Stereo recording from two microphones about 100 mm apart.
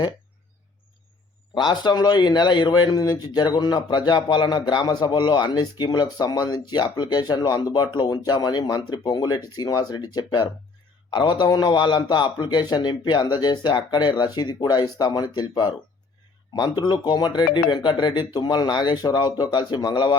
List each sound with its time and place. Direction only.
1.5 s speech: 45° left (ahead or behind)